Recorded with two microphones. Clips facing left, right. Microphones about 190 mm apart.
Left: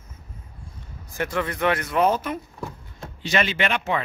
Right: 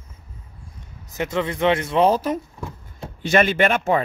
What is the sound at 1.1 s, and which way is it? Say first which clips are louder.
Speech: right 3 dB; 20° right (ahead or behind).